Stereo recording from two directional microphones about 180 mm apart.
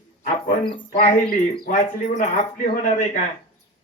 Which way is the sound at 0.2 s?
45° left (ahead or behind).